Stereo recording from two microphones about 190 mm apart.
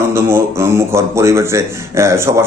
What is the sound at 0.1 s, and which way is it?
A man's voice, 15° right (ahead or behind).